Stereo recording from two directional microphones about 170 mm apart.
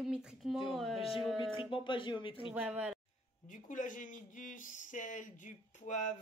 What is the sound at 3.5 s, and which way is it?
Speech, 50° left (ahead or behind).